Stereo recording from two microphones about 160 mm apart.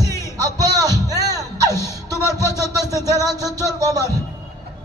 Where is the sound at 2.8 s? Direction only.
20° left (ahead or behind).